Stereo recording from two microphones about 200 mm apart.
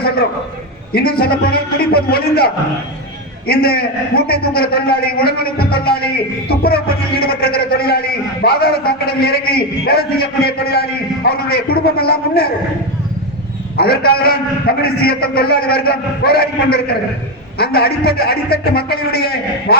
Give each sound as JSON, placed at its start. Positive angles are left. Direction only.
{"t": 1.2, "sound": "a man's voice", "side_deg": 50}
{"t": 13.7, "sound": "a man's voice", "side_deg": 50}